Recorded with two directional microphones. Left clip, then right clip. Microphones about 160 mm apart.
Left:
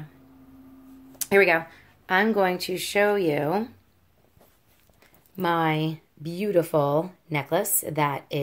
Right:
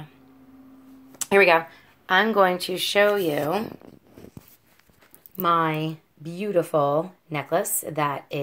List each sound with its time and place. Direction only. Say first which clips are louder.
1.2 s speech: right 2 dB; centre (ahead or behind)
5.3 s speech: right 2 dB; 35° left (ahead or behind)